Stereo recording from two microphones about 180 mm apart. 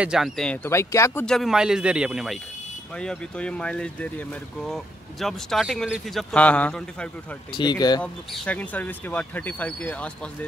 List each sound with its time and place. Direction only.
0.0 s speech: centre (ahead or behind)
0.7 s speech: 15° left (ahead or behind)
1.2 s speech: centre (ahead or behind)
7.5 s speech: 25° left (ahead or behind)
8.0 s speech: 5° left (ahead or behind)